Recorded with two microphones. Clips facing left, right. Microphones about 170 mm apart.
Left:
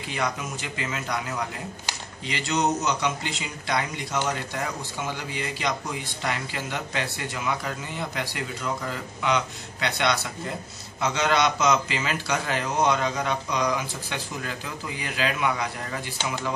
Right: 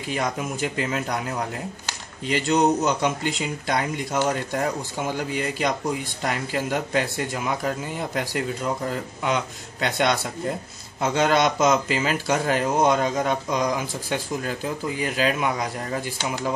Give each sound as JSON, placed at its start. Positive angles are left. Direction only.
{"t": 0.4, "sound": "a man's voice", "side_deg": -45}